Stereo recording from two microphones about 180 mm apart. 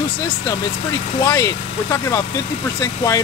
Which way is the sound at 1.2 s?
20° left (ahead or behind).